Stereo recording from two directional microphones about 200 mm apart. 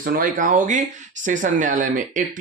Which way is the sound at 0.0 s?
40° right (ahead or behind).